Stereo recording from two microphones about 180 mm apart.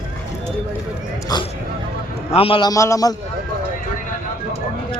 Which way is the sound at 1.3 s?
20° left (ahead or behind).